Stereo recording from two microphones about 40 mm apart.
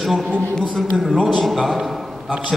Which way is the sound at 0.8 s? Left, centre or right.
Centre.